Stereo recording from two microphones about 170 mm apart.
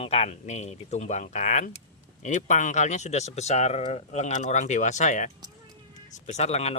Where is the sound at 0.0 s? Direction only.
35° left (ahead or behind).